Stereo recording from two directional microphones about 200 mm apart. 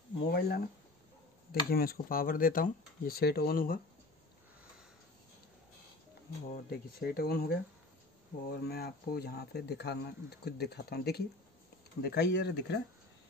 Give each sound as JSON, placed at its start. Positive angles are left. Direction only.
{"t": 0.2, "sound": "speech", "side_deg": 50}
{"t": 6.5, "sound": "speech", "side_deg": 50}